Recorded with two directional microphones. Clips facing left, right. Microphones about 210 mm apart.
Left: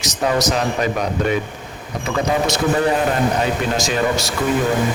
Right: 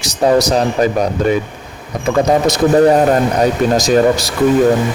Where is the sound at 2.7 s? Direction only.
45° right (ahead or behind).